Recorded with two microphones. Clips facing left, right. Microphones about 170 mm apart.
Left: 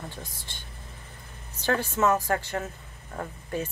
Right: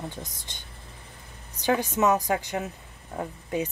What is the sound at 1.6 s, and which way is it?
Speech, 15° right (ahead or behind).